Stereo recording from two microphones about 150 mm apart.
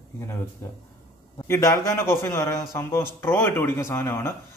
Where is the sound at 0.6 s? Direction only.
15° left (ahead or behind).